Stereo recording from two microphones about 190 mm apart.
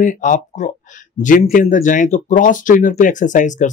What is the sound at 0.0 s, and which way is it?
Speech, 45° left (ahead or behind).